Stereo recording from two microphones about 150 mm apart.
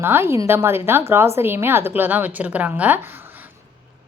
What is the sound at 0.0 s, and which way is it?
Speech, 15° right (ahead or behind).